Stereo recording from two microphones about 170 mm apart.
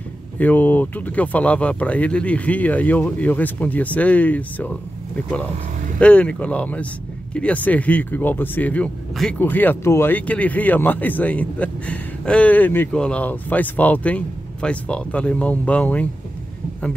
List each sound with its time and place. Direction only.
0.4 s speech: 10° left (ahead or behind)